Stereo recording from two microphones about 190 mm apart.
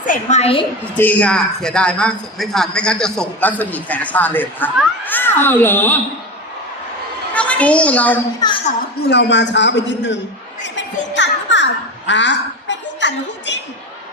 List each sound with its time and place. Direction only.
0.0 s a woman's voice: 40° left (ahead or behind)
0.9 s a man's voice: 10° left (ahead or behind)
7.3 s a child's voice: 5° left (ahead or behind)
8.4 s speech: 20° left (ahead or behind)
9.0 s a man's voice: 65° left (ahead or behind)
11.1 s a sound: 70° left (ahead or behind)